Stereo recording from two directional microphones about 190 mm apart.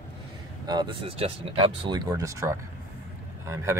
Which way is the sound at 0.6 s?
20° right (ahead or behind).